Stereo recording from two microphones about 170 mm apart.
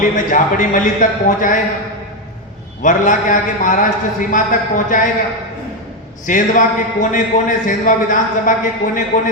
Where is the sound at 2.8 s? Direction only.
50° left (ahead or behind).